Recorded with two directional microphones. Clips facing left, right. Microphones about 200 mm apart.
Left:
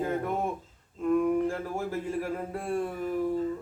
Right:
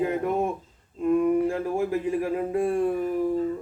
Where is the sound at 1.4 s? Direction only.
15° right (ahead or behind).